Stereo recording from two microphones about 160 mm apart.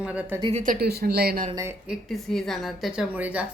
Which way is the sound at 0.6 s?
70° right (ahead or behind).